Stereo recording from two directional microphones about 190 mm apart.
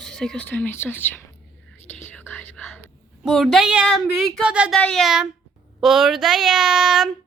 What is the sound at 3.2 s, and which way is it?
Speech, centre (ahead or behind).